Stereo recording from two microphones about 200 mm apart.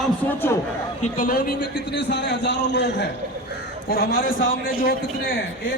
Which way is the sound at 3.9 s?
50° left (ahead or behind).